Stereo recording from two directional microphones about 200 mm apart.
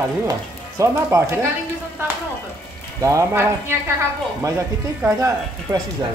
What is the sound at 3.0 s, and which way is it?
Speech, 15° right (ahead or behind).